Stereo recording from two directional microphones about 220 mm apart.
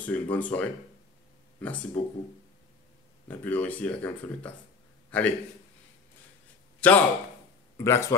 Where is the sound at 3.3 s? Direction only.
10° left (ahead or behind).